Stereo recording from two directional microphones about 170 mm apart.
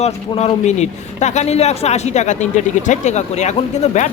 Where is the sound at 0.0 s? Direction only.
40° left (ahead or behind).